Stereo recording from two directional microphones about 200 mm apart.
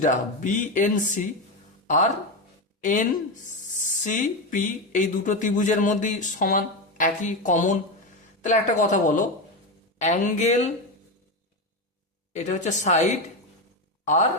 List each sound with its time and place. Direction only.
0.0 s speech: 40° left (ahead or behind)
2.8 s speech: 40° left (ahead or behind)
12.3 s speech: 35° left (ahead or behind)